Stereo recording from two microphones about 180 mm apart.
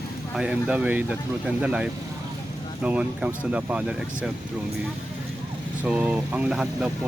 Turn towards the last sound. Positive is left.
turn(degrees=-5)  # may be behind; listen again after turning